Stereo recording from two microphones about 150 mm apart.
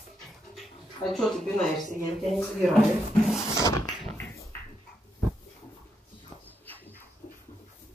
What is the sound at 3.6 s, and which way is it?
Dog, 20° left (ahead or behind).